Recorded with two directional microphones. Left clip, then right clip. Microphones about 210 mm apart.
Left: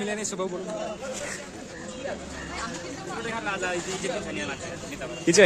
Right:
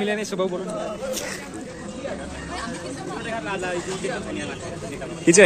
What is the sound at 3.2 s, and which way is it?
Speech, 50° left (ahead or behind).